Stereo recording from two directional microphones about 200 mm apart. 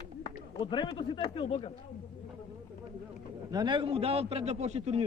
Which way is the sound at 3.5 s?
25° right (ahead or behind).